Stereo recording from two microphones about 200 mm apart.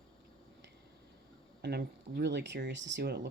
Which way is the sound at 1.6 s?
55° right (ahead or behind).